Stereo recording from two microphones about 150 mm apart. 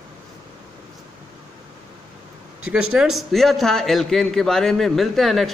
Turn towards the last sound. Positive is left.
turn(degrees=0)  # may be behind; listen again after turning